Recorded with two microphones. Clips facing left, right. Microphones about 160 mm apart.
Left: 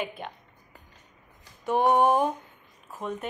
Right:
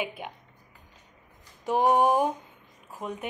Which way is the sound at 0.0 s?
10° right (ahead or behind).